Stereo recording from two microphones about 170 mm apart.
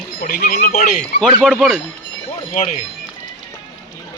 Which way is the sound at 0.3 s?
60° left (ahead or behind).